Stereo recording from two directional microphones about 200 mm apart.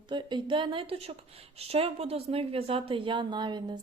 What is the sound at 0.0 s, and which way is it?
A woman's voice, 20° right (ahead or behind).